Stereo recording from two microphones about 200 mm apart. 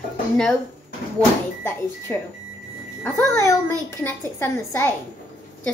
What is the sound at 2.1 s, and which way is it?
A woman's voice, 10° left (ahead or behind).